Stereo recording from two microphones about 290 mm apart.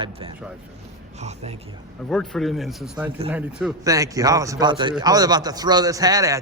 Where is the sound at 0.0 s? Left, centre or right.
Centre.